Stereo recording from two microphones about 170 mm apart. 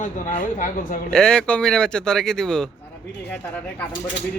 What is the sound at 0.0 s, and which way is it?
Speech, 50° left (ahead or behind).